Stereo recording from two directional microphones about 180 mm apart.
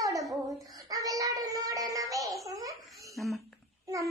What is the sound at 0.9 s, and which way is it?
Child singing, 20° right (ahead or behind).